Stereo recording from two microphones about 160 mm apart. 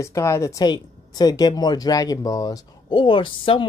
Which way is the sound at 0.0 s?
15° left (ahead or behind).